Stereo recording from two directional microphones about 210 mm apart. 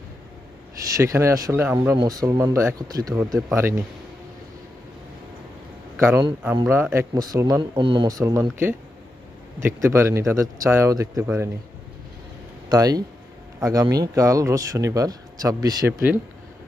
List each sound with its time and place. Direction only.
0.9 s speech: 15° right (ahead or behind)
6.0 s speech: 10° right (ahead or behind)
9.6 s speech: 15° right (ahead or behind)
12.6 s speech: 15° right (ahead or behind)